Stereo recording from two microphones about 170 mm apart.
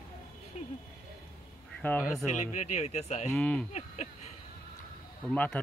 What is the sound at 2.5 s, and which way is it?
Speech, 40° left (ahead or behind).